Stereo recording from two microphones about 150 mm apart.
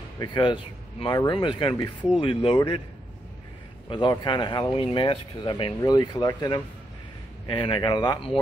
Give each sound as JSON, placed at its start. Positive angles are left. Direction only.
{"t": 0.2, "sound": "speech", "side_deg": 30}
{"t": 3.9, "sound": "speech", "side_deg": 30}